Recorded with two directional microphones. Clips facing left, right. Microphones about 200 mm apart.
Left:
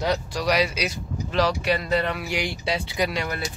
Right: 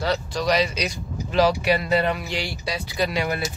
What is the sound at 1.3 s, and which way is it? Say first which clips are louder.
Speech: right 3 dB; 5° right (ahead or behind).